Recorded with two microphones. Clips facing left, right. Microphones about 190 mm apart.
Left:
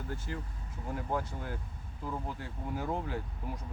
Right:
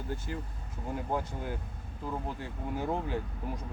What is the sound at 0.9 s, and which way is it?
Speech, 20° right (ahead or behind).